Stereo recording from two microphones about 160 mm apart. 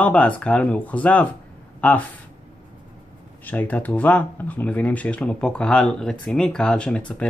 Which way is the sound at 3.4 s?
10° left (ahead or behind).